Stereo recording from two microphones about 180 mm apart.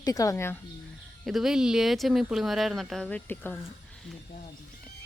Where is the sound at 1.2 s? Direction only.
Centre (ahead or behind).